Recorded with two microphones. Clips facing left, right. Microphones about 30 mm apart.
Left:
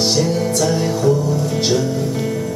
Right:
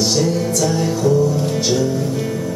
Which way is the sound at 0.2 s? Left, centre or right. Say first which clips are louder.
Even; left.